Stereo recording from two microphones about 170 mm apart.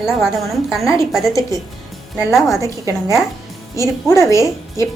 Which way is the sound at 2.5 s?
20° right (ahead or behind).